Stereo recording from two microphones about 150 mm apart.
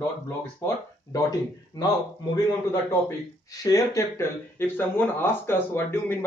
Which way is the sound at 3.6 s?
20° left (ahead or behind).